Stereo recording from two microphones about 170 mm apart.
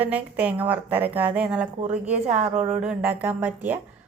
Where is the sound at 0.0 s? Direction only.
10° right (ahead or behind).